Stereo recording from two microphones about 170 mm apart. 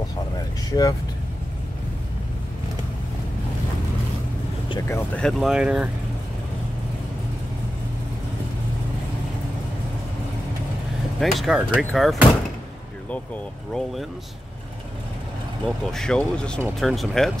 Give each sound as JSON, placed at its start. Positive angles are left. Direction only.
{"t": 0.7, "sound": "speech", "side_deg": 20}
{"t": 4.8, "sound": "speech", "side_deg": 15}
{"t": 5.2, "sound": "speech", "side_deg": 0}
{"t": 11.1, "sound": "speech", "side_deg": 0}
{"t": 15.6, "sound": "speech", "side_deg": 5}